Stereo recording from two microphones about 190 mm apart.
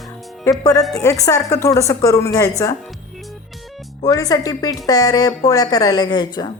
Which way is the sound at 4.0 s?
20° left (ahead or behind).